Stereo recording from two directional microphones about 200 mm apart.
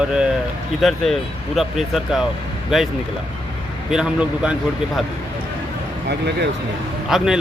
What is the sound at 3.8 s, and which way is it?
Speech, 5° right (ahead or behind).